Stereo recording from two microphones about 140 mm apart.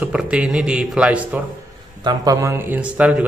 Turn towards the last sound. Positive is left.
turn(degrees=-10)  # may be behind; listen again after turning